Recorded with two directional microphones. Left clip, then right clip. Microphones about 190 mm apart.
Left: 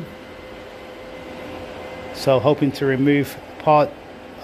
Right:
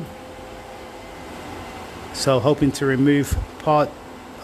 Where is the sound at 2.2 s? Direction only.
20° right (ahead or behind).